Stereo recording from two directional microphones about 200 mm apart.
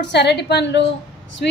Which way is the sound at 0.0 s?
55° left (ahead or behind).